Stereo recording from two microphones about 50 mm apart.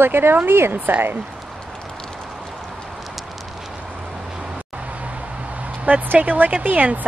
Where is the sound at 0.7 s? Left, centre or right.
Right.